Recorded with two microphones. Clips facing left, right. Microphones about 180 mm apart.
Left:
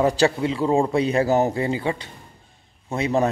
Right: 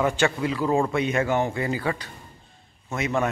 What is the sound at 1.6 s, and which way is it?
Speech, 25° left (ahead or behind).